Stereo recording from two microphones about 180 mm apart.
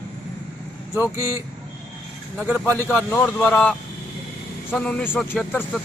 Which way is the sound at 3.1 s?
10° left (ahead or behind).